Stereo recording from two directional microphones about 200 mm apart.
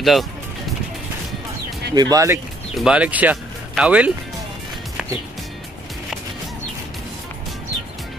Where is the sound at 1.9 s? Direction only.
20° right (ahead or behind).